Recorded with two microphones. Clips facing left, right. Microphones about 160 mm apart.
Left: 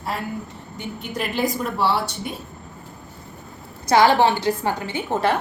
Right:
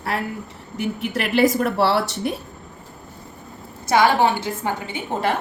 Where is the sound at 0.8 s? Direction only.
90° right; by 2.3 s 75° right (ahead or behind).